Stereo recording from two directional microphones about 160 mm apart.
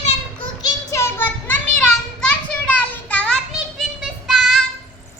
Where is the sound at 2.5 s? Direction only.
10° left (ahead or behind).